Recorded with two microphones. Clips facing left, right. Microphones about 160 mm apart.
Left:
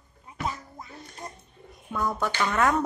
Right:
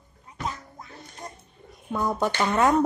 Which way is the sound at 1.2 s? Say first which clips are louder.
Right 1 dB; 5° left (ahead or behind).